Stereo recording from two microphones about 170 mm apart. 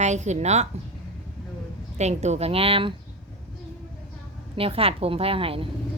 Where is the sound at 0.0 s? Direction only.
45° right (ahead or behind).